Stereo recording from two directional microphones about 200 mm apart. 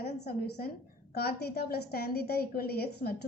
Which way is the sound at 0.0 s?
55° left (ahead or behind).